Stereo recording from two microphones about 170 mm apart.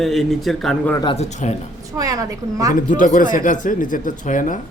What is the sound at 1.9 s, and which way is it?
Speech, 20° right (ahead or behind).